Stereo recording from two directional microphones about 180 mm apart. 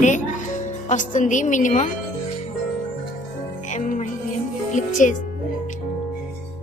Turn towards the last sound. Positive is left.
turn(degrees=45)  # may be behind; listen again after turning